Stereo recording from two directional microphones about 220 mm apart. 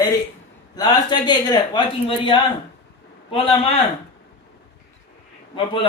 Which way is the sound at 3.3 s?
25° left (ahead or behind).